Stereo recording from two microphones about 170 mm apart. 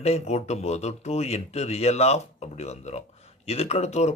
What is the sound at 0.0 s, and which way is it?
Speech, 40° left (ahead or behind).